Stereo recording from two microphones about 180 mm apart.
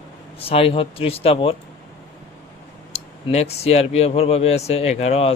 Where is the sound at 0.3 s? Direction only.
30° left (ahead or behind).